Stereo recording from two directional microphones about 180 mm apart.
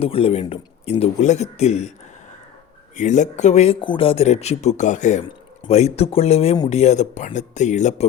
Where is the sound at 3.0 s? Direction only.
40° left (ahead or behind).